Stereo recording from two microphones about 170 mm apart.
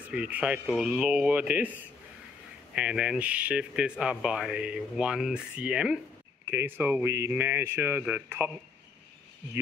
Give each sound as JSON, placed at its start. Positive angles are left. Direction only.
{"t": 0.0, "sound": "speech", "side_deg": -10}
{"t": 2.7, "sound": "speech", "side_deg": -5}